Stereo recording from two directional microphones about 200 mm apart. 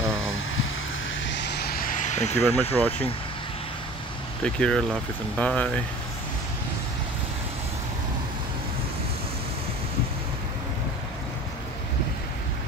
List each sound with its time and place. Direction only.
1.2 s vehicle: 60° left (ahead or behind); by 2.4 s 35° left (ahead or behind)
2.7 s speech: 10° left (ahead or behind)
4.4 s speech: 5° left (ahead or behind)